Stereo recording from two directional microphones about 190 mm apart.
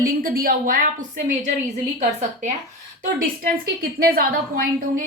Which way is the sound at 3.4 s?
50° right (ahead or behind).